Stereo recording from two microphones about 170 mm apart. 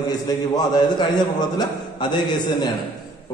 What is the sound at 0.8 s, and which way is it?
Speech, 25° left (ahead or behind).